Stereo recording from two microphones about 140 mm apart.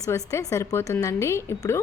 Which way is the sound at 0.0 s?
20° left (ahead or behind).